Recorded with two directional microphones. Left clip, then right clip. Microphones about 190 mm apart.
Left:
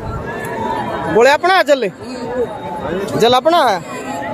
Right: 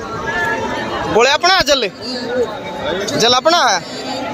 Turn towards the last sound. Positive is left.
turn(degrees=20)  # may be behind; listen again after turning